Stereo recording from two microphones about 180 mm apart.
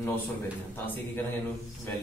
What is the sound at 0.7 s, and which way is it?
Speech, 10° left (ahead or behind).